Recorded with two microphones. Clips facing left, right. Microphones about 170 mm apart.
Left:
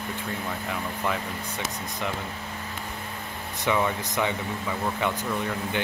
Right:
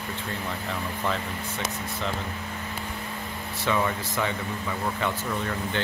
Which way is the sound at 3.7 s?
15° left (ahead or behind).